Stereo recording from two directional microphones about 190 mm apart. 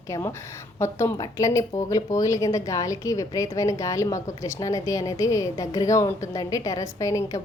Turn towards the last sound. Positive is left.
turn(degrees=15)  # may be behind; listen again after turning